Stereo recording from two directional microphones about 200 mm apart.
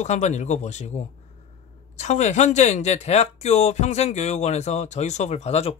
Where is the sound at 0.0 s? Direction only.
35° left (ahead or behind).